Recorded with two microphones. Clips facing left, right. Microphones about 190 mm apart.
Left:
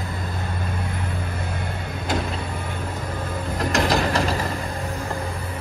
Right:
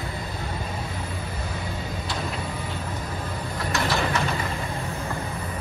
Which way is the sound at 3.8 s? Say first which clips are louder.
Left 4 dB; 35° left (ahead or behind).